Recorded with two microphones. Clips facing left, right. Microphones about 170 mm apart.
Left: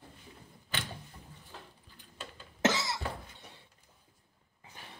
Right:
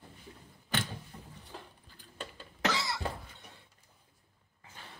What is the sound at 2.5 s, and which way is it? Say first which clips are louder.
Cough: left 3 dB; 20° left (ahead or behind).